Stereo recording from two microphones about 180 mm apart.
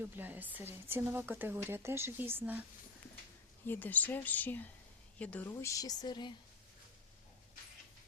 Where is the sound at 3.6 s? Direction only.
10° left (ahead or behind).